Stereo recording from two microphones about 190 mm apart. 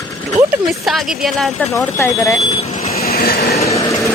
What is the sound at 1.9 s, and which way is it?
Speech, 15° left (ahead or behind).